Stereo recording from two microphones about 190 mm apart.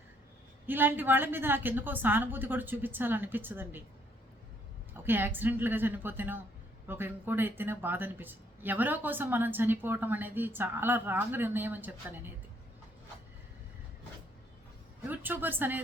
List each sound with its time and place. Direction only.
0.7 s speech: 10° right (ahead or behind)
4.9 s speech: 10° right (ahead or behind)
15.0 s speech: 10° right (ahead or behind)